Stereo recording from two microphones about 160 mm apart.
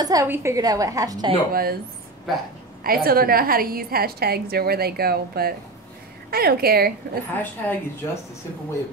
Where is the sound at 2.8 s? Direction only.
65° right (ahead or behind).